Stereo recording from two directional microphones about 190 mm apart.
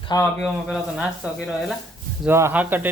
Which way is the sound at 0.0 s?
20° left (ahead or behind).